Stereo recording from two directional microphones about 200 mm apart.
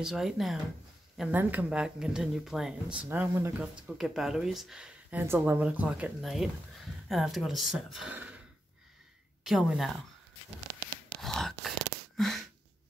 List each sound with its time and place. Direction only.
0.0 s speech: centre (ahead or behind)
9.4 s speech: centre (ahead or behind)
11.1 s whispering: centre (ahead or behind)
12.2 s a sound: centre (ahead or behind)